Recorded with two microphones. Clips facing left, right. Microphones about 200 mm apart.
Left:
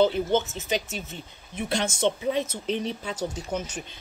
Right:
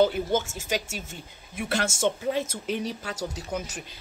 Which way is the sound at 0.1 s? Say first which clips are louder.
Left 2 dB; 10° right (ahead or behind).